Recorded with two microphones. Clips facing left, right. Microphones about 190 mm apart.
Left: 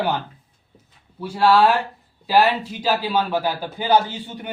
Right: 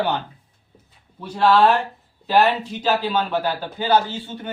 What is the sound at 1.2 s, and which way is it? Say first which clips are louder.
A man's voice: even; 10° left (ahead or behind).